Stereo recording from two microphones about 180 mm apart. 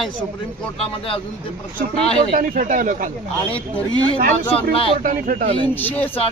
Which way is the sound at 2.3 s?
50° right (ahead or behind).